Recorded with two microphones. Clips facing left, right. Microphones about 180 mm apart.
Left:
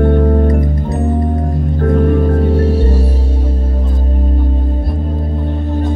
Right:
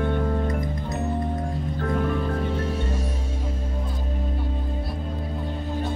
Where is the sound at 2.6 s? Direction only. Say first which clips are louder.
Left 12 dB; 35° left (ahead or behind).